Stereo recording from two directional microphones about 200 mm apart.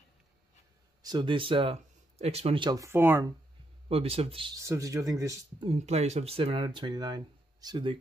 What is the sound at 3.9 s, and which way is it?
Speech, 30° right (ahead or behind).